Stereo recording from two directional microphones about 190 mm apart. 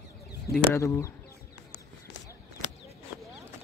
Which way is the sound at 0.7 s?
15° left (ahead or behind).